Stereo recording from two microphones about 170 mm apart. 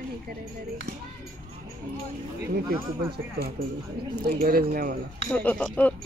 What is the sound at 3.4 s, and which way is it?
A woman's voice, 70° right (ahead or behind).